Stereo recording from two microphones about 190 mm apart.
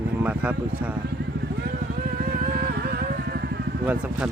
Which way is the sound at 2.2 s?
55° right (ahead or behind).